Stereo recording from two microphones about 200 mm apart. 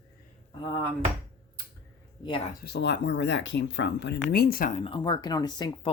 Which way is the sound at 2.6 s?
55° left (ahead or behind).